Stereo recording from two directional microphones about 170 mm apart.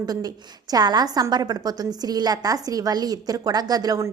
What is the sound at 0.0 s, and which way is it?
A woman's voice, 20° right (ahead or behind).